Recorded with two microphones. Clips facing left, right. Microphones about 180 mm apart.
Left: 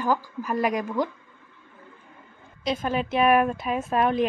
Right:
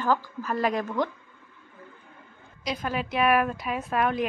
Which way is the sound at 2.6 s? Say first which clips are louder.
Left 4 dB; 25° left (ahead or behind).